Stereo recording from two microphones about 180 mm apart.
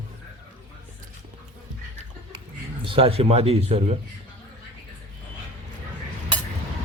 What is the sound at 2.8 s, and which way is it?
Speech, 30° right (ahead or behind).